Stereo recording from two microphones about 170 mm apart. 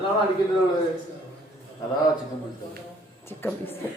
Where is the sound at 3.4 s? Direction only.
10° left (ahead or behind).